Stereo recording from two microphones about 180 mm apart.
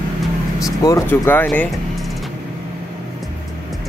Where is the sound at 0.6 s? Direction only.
20° left (ahead or behind).